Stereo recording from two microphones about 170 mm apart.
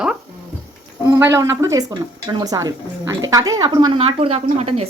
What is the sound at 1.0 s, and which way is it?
A woman's voice, 20° right (ahead or behind).